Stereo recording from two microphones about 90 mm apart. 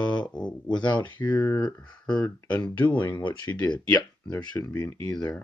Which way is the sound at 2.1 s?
10° left (ahead or behind).